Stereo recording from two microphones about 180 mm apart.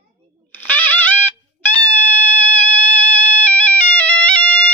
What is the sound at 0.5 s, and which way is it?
Music, 10° left (ahead or behind).